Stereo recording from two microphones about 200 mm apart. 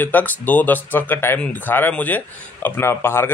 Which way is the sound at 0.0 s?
10° left (ahead or behind).